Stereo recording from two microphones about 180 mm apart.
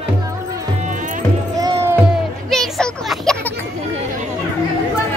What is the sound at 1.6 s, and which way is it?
Music, 20° right (ahead or behind).